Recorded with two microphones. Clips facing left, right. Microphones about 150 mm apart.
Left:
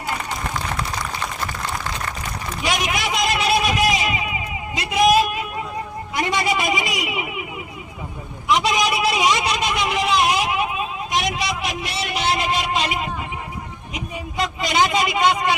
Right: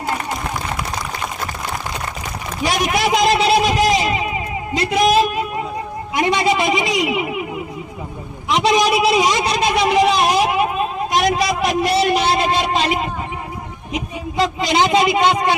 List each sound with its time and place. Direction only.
2.6 s a sound: 35° right (ahead or behind)
6.1 s a man's voice: 25° right (ahead or behind)
8.4 s vehicle: 30° right (ahead or behind)
13.9 s a man's voice: 30° right (ahead or behind)